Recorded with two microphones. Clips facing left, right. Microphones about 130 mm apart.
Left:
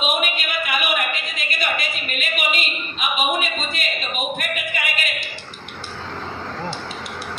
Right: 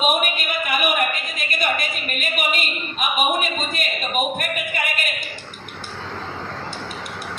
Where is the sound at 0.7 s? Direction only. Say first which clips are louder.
Right 3 dB; 45° right (ahead or behind).